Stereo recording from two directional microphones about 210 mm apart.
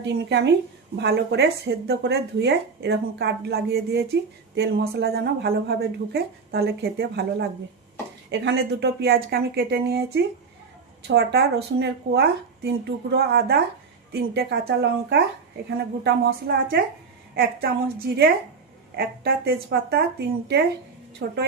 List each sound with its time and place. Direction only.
0.0 s speech: 55° right (ahead or behind)